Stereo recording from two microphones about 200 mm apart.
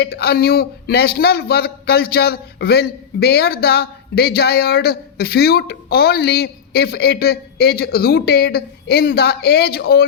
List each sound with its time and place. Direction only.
0.0 s a man's voice: 55° left (ahead or behind)